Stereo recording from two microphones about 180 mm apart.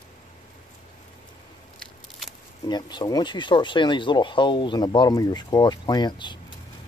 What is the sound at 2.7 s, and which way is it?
Speech, 25° left (ahead or behind).